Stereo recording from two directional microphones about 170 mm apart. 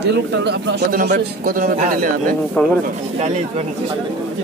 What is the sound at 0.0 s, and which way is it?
Speech, 90° right.